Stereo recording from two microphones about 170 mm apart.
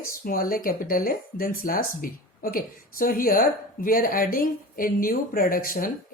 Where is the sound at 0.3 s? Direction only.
55° left (ahead or behind).